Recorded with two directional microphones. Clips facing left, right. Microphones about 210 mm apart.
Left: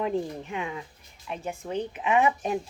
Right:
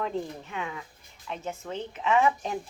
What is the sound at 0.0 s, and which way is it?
Speech, 15° left (ahead or behind).